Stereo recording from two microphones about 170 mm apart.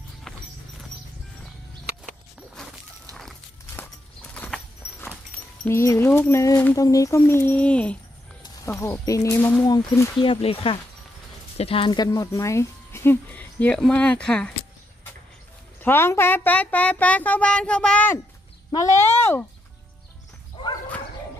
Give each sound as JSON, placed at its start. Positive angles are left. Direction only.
{"t": 3.7, "sound": "horse", "side_deg": 10}
{"t": 5.7, "sound": "speech", "side_deg": 15}
{"t": 8.4, "sound": "speech", "side_deg": 20}
{"t": 15.8, "sound": "speech", "side_deg": 15}